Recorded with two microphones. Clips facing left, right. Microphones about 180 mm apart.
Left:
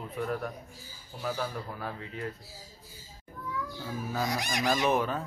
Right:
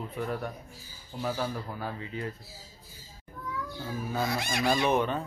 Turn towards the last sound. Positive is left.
turn(degrees=0)  # may be behind; listen again after turning